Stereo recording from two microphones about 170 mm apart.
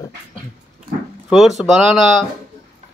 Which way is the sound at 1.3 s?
Centre (ahead or behind).